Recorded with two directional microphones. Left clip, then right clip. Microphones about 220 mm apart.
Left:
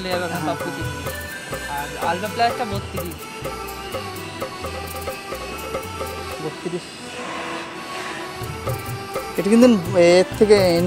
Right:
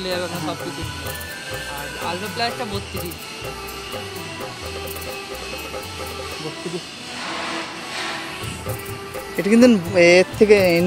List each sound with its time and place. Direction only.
0.0 s speech: 45° left (ahead or behind)
2.0 s speech: 45° left (ahead or behind)
9.4 s speech: 5° right (ahead or behind)